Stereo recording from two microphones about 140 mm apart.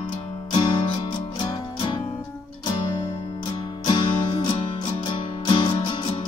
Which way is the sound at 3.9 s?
35° left (ahead or behind).